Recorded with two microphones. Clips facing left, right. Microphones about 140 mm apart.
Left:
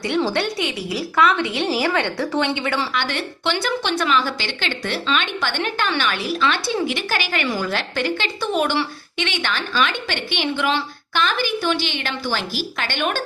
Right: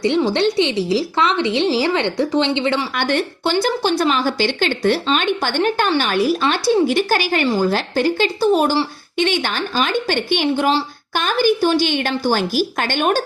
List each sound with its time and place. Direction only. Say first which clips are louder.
0.0 s a woman's voice: right 5 dB; 20° right (ahead or behind)
2.9 s a woman's voice: right 5 dB; 50° right (ahead or behind)